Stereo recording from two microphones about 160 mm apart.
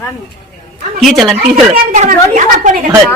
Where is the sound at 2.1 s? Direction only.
55° right (ahead or behind).